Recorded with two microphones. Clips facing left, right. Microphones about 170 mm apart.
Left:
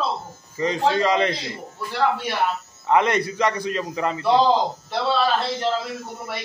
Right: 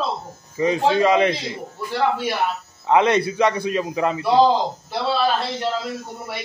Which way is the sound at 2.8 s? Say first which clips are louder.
Right 3 dB; 20° right (ahead or behind).